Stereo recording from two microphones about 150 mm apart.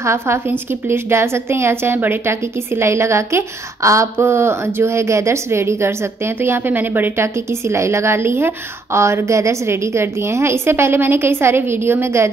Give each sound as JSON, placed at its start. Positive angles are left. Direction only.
{"t": 0.0, "sound": "a woman's voice", "side_deg": -15}